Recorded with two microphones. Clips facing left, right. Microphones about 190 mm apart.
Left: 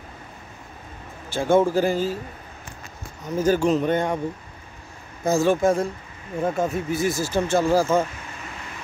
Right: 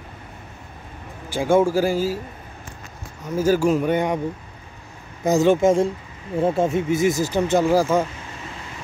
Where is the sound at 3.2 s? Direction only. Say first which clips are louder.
Right 2 dB; 10° right (ahead or behind).